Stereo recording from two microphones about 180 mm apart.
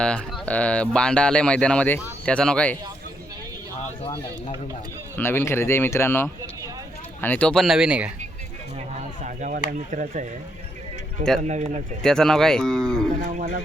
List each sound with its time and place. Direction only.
0.0 s speech: 5° left (ahead or behind)
3.8 s a sound: 30° left (ahead or behind)
5.1 s speech: 15° left (ahead or behind); by 8.1 s 5° right (ahead or behind)
9.0 s speech: 45° right (ahead or behind)
11.3 s speech: 40° right (ahead or behind)
12.0 s speech: 5° left (ahead or behind)